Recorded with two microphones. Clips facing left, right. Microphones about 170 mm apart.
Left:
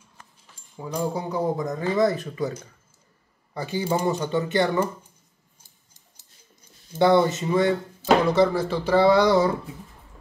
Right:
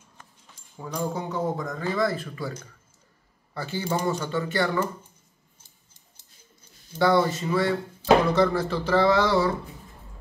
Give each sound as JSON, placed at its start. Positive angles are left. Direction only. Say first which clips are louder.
{"t": 0.7, "sound": "a man's voice", "louder": "left 2 dB", "side_deg": 10}
{"t": 3.5, "sound": "a man's voice", "louder": "left 3 dB", "side_deg": 15}
{"t": 7.0, "sound": "a man's voice", "louder": "left 3 dB", "side_deg": 20}
{"t": 8.3, "sound": "speech", "louder": "left 2 dB", "side_deg": 10}